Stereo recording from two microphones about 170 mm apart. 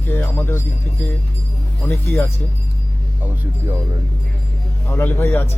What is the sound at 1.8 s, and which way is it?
Speech, 10° left (ahead or behind).